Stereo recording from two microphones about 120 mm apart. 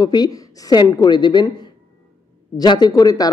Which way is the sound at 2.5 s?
35° left (ahead or behind).